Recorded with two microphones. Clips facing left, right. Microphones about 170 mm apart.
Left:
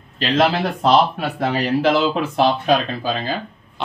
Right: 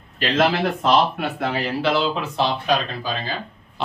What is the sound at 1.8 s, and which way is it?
Speech, 45° left (ahead or behind).